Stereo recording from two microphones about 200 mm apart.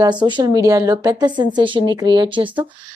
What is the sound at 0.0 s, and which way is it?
Speech, 20° right (ahead or behind).